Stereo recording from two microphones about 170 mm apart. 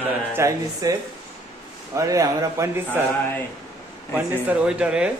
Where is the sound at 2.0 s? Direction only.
20° right (ahead or behind).